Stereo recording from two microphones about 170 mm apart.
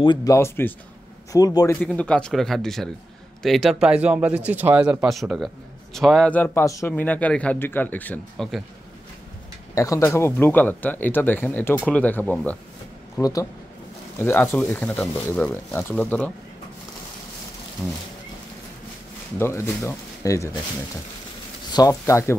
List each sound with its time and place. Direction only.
0.0 s speech: 25° left (ahead or behind)
1.8 s speech: 5° left (ahead or behind)
9.8 s speech: 20° left (ahead or behind)
13.2 s speech: 20° left (ahead or behind)
19.3 s speech: 15° left (ahead or behind)
21.7 s speech: 20° left (ahead or behind)